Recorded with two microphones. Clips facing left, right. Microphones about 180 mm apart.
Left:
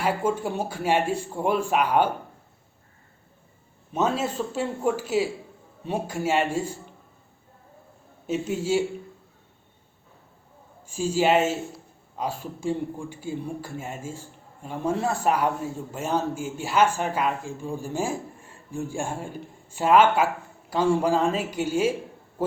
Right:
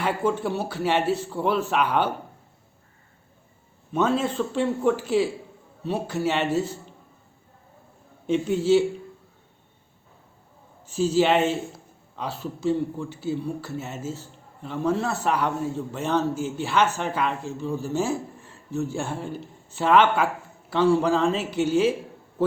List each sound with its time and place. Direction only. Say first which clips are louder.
0.0 s a man's voice: even; 10° left (ahead or behind)
0.4 s speech: right 1 dB; 50° left (ahead or behind)
0.9 s a man's voice: even; 10° left (ahead or behind)
4.0 s a man's voice: right 2 dB; 10° left (ahead or behind)
8.3 s a man's voice: right 5 dB; 10° left (ahead or behind)
10.8 s a man's voice: right 2 dB; 10° left (ahead or behind)